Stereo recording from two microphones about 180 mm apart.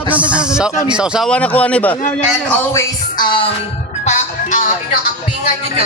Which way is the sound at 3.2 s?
25° left (ahead or behind).